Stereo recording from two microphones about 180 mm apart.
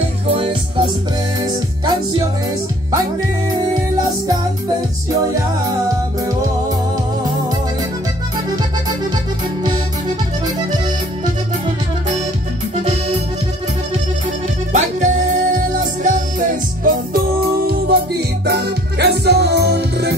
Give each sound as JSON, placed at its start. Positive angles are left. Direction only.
{"t": 0.4, "sound": "music", "side_deg": -30}
{"t": 9.6, "sound": "music", "side_deg": -20}
{"t": 12.8, "sound": "accordion", "side_deg": -40}
{"t": 14.7, "sound": "music", "side_deg": -45}
{"t": 17.6, "sound": "music", "side_deg": -60}